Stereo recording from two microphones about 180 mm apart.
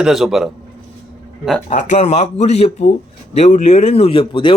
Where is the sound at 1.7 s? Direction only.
35° left (ahead or behind).